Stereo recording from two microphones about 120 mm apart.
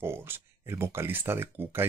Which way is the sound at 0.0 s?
20° right (ahead or behind).